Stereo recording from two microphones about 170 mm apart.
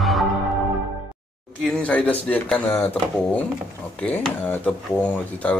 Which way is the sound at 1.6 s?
5° left (ahead or behind).